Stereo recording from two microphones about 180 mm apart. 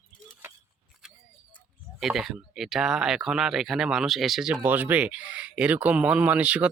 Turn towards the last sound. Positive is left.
turn(degrees=-5)  # may be behind; listen again after turning